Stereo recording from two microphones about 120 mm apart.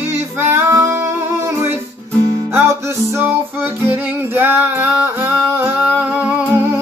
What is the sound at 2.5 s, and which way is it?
Music, 20° right (ahead or behind).